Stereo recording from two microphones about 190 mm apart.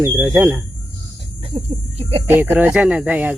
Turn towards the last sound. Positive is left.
turn(degrees=-5)  # may be behind; listen again after turning